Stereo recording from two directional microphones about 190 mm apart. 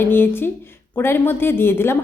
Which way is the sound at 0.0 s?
10° left (ahead or behind).